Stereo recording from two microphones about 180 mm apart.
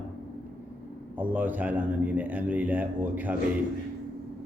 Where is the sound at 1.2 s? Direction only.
10° right (ahead or behind).